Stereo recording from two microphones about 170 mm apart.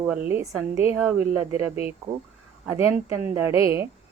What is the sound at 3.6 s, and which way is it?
Speech, 15° right (ahead or behind).